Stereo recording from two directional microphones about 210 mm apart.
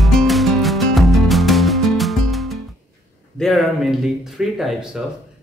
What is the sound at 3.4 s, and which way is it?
Speech, centre (ahead or behind).